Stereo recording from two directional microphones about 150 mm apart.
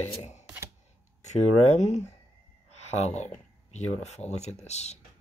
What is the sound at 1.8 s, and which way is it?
Speech, 50° left (ahead or behind).